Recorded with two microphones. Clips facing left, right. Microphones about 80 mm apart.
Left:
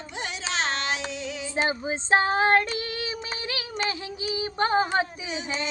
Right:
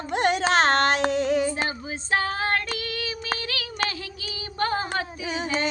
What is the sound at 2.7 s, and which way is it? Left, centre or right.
Child singing, left.